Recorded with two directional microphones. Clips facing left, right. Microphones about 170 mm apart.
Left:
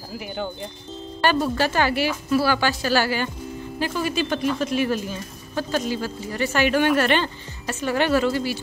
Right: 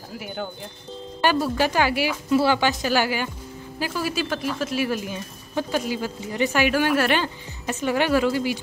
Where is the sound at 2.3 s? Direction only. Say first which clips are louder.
Right 2 dB; 20° right (ahead or behind).